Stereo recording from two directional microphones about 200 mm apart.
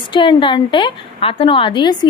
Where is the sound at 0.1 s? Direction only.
25° left (ahead or behind).